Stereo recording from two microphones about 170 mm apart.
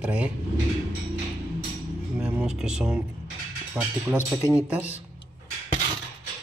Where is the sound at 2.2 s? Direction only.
5° right (ahead or behind).